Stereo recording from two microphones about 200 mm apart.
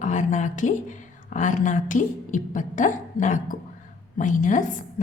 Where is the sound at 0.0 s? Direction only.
40° left (ahead or behind).